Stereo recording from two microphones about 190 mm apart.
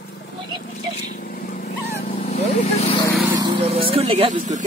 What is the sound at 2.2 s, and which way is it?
Speech, 35° left (ahead or behind).